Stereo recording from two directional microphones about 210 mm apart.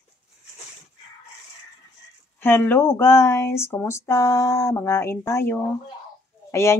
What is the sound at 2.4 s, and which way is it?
Speech, 10° left (ahead or behind).